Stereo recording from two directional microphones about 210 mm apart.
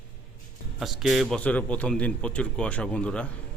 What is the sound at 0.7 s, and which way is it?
A man's voice, centre (ahead or behind).